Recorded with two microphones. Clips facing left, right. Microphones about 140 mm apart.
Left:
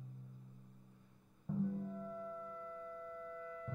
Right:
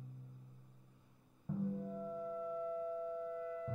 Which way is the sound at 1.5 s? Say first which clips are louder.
Left 2 dB; 5° right (ahead or behind).